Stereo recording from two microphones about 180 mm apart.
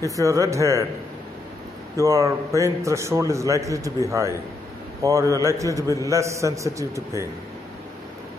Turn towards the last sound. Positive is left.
turn(degrees=-15)  # may be behind; listen again after turning